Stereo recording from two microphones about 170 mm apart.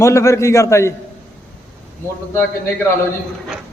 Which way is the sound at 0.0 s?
15° left (ahead or behind).